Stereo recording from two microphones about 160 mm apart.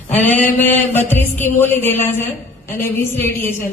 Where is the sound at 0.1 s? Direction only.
10° left (ahead or behind).